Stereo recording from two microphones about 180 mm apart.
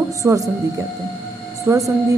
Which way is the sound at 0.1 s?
20° right (ahead or behind).